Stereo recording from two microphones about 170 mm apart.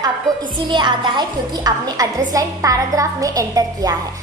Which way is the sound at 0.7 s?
25° right (ahead or behind).